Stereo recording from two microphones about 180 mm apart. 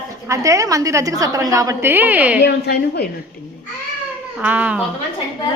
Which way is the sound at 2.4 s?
65° left (ahead or behind).